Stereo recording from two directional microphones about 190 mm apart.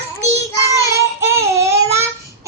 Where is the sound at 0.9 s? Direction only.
15° right (ahead or behind).